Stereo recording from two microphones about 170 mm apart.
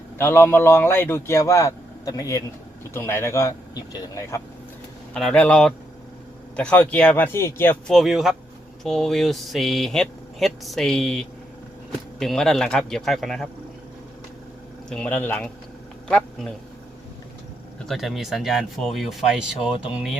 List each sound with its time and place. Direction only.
0.2 s a man's voice: 15° left (ahead or behind)
5.1 s a man's voice: 5° left (ahead or behind)
7.9 s speech: centre (ahead or behind)
14.8 s a man's voice: 5° left (ahead or behind)
17.8 s speech: centre (ahead or behind)